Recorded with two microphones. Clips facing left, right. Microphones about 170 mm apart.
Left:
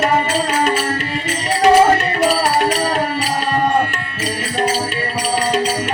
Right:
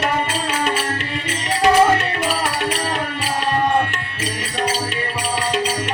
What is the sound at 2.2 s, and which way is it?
Music, 40° left (ahead or behind).